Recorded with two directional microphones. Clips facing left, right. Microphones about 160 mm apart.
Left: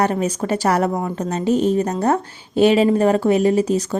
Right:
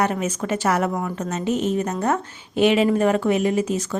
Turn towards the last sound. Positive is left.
turn(degrees=35)  # may be behind; listen again after turning